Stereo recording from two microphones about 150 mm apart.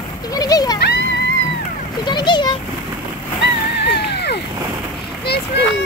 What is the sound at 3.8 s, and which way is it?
Music, 90° left.